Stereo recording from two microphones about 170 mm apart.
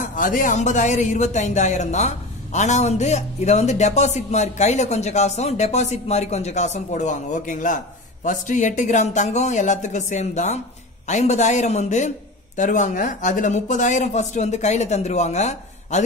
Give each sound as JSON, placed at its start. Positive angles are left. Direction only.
{"t": 0.1, "sound": "speech", "side_deg": 50}